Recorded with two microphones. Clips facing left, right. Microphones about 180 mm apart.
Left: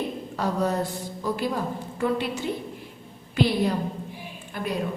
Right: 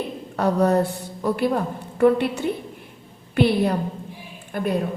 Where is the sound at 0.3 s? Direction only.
60° right (ahead or behind).